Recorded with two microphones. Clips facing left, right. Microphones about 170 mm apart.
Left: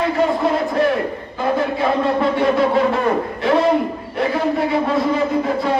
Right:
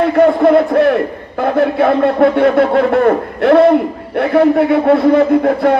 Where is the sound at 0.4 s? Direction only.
60° right (ahead or behind).